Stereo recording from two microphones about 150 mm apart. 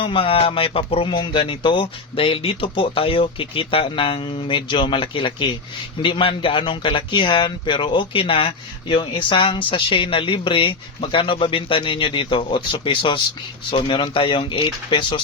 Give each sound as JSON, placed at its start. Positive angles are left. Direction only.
{"t": 0.0, "sound": "speech", "side_deg": 35}